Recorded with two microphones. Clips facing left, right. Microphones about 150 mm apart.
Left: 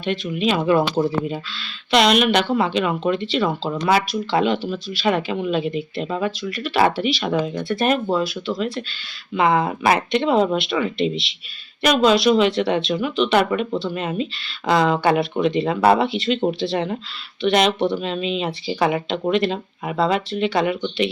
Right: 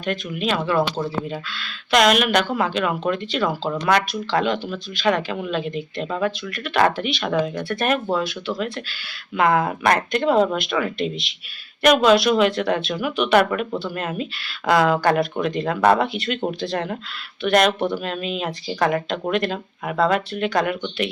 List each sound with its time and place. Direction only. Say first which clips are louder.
0.1 s speech: left 3 dB; centre (ahead or behind)
0.6 s speech: left 5 dB; 15° left (ahead or behind)
1.3 s speech: left 1 dB; centre (ahead or behind)